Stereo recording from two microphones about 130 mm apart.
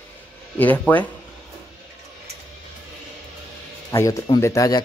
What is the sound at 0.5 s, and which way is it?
Speech, 15° left (ahead or behind).